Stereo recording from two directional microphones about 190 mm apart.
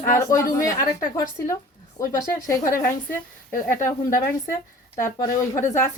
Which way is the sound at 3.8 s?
15° left (ahead or behind).